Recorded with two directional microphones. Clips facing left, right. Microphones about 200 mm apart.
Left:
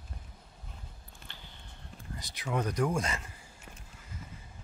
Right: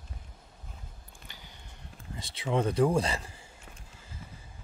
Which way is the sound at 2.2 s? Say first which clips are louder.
Right 4 dB; 25° right (ahead or behind).